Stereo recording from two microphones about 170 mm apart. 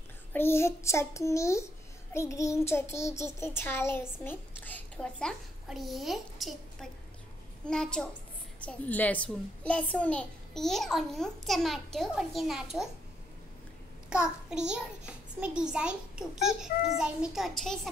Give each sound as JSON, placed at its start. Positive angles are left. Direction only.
{"t": 0.3, "sound": "a child's voice", "side_deg": 15}
{"t": 14.0, "sound": "a child's voice", "side_deg": -5}